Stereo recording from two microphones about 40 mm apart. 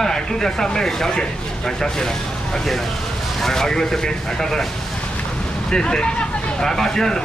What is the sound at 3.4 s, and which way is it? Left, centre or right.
Speech, centre.